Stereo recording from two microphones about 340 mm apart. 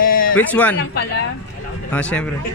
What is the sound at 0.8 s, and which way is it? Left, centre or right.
Speech, left.